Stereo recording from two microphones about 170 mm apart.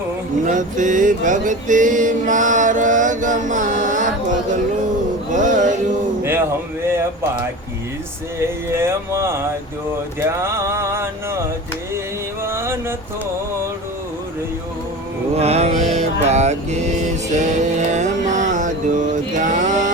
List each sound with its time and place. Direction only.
0.4 s a sound: 50° right (ahead or behind)
5.3 s music: 50° right (ahead or behind)
6.8 s speech: 15° right (ahead or behind)
8.4 s speech: 15° right (ahead or behind)
12.4 s a sound: 15° right (ahead or behind)
15.4 s mantra: 40° right (ahead or behind)